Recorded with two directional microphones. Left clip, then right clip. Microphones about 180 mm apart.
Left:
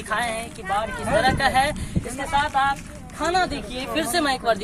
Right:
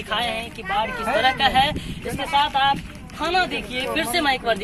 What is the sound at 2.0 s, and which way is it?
Speech, 10° left (ahead or behind).